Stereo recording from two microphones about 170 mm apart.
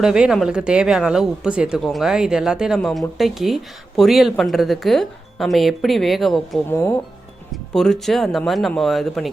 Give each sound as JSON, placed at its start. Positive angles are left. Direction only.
{"t": 0.0, "sound": "a woman's voice", "side_deg": -5}
{"t": 6.7, "sound": "speech", "side_deg": 15}
{"t": 7.5, "sound": "a woman's voice", "side_deg": 5}